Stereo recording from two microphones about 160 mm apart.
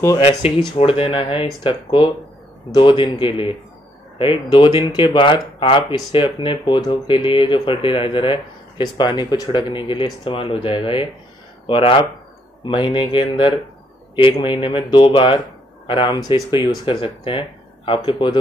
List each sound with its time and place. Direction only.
0.2 s speech: 40° left (ahead or behind)